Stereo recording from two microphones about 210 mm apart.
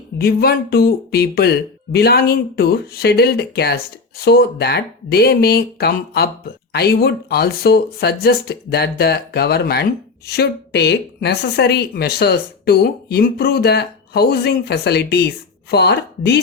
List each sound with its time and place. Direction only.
0.2 s speech: 50° left (ahead or behind)